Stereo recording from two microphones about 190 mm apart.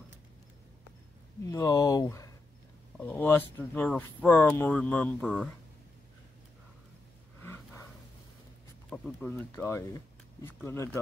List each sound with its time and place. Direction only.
1.4 s speech: 20° left (ahead or behind)
8.9 s speech: 10° left (ahead or behind)